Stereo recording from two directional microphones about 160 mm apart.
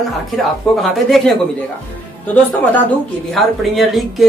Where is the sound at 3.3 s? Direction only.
Centre (ahead or behind).